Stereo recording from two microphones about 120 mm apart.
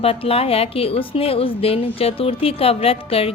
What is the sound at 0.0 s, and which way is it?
A woman's voice, 55° left (ahead or behind).